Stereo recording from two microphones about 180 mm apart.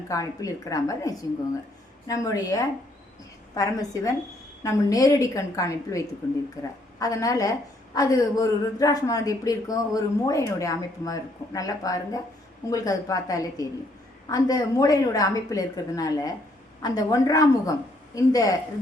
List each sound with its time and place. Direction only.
0.1 s a woman's voice: 20° left (ahead or behind)